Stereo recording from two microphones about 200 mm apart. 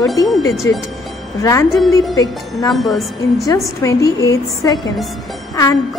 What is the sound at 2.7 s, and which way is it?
Speech, centre (ahead or behind).